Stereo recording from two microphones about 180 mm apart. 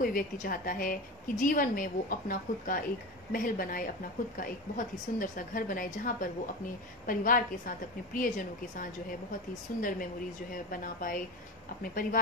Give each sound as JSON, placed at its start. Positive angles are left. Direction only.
{"t": 0.0, "sound": "a woman's voice", "side_deg": 50}